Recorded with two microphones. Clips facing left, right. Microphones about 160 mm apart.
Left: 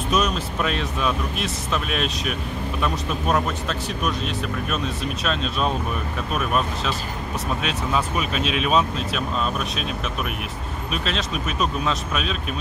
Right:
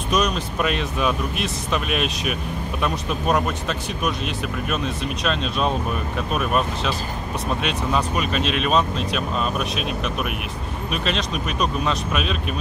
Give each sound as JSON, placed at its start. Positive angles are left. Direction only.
{"t": 0.1, "sound": "speech", "side_deg": 0}
{"t": 10.9, "sound": "speech", "side_deg": 0}